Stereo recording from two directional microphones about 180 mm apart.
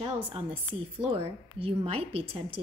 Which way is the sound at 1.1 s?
30° right (ahead or behind).